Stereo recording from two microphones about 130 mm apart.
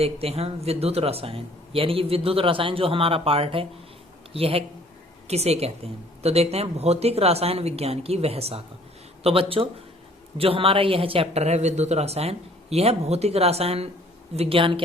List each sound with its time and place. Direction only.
0.0 s speech: 50° right (ahead or behind)